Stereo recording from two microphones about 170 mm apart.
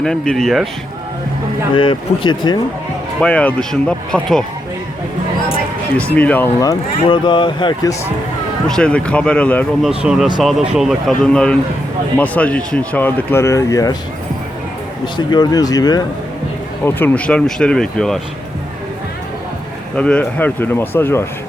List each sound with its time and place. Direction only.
0.0 s speech: 5° left (ahead or behind)
1.7 s speech: 30° left (ahead or behind)
3.2 s speech: 5° left (ahead or behind)
6.1 s speech: 10° left (ahead or behind)
7.1 s speech: 30° left (ahead or behind)
8.6 s speech: 5° left (ahead or behind)
10.0 s speech: 5° right (ahead or behind); by 13.9 s 20° left (ahead or behind)
15.0 s speech: 25° left (ahead or behind)
16.8 s speech: 10° left (ahead or behind)
20.0 s speech: 5° left (ahead or behind)